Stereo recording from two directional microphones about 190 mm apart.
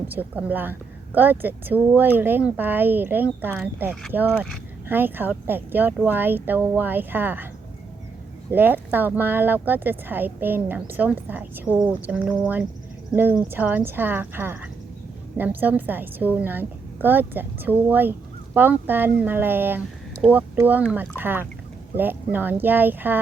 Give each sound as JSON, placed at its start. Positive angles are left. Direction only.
{"t": 0.1, "sound": "speech", "side_deg": -10}
{"t": 8.4, "sound": "speech", "side_deg": -10}